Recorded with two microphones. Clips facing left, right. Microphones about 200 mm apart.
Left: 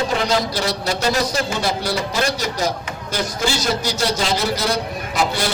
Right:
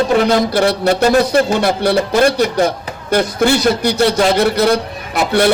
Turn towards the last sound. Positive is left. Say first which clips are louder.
# right 8 dB
turn(degrees=-60)  # may be behind; listen again after turning